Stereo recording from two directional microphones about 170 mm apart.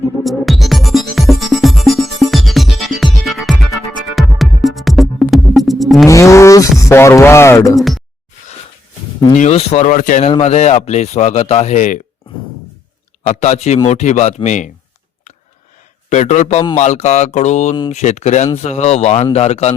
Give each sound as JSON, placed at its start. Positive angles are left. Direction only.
{"t": 0.2, "sound": "music", "side_deg": 0}
{"t": 6.1, "sound": "speech", "side_deg": 15}
{"t": 9.3, "sound": "speech", "side_deg": 40}
{"t": 10.2, "sound": "speech", "side_deg": 35}
{"t": 13.2, "sound": "speech", "side_deg": 40}
{"t": 16.0, "sound": "speech", "side_deg": 45}